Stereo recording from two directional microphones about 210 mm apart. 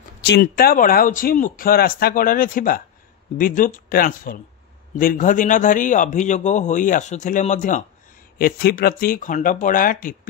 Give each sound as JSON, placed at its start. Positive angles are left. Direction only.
{"t": 0.2, "sound": "speech", "side_deg": 50}